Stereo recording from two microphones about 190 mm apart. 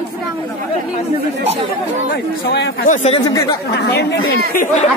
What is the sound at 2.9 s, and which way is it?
Speech, 35° left (ahead or behind).